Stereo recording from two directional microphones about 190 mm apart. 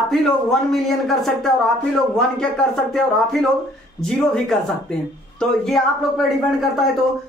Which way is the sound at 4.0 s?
Centre (ahead or behind).